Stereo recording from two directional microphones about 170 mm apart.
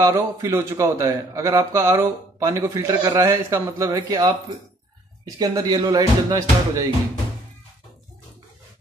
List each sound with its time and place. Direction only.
0.0 s a man's voice: 15° right (ahead or behind)